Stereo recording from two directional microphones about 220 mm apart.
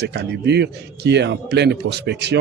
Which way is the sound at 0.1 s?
50° right (ahead or behind).